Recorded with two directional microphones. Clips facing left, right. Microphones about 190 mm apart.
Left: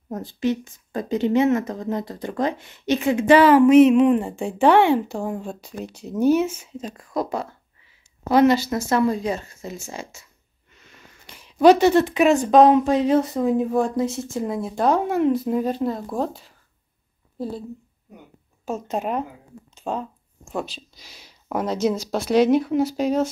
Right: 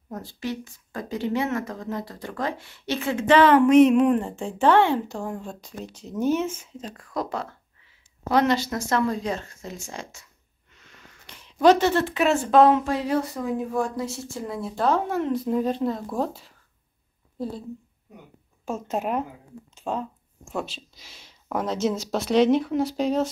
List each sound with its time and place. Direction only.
0.1 s a woman's voice: 20° left (ahead or behind); by 16.4 s centre (ahead or behind)
18.7 s speech: centre (ahead or behind)
19.7 s a sound: centre (ahead or behind)
20.9 s speech: centre (ahead or behind)